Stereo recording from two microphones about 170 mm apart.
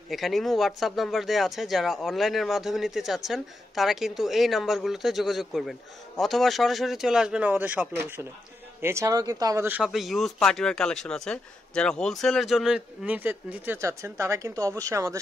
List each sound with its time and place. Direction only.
0.1 s speech: centre (ahead or behind)
9.8 s speech: centre (ahead or behind); by 15.1 s 20° right (ahead or behind)